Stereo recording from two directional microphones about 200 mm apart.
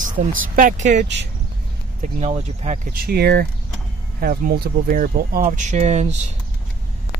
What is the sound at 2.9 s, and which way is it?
Speech, 50° right (ahead or behind).